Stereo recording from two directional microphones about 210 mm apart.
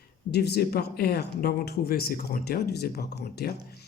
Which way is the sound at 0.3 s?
50° left (ahead or behind).